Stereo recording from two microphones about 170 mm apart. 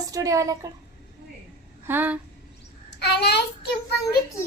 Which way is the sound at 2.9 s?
80° left.